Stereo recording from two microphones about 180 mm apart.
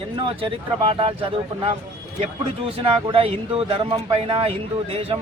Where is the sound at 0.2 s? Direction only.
30° right (ahead or behind).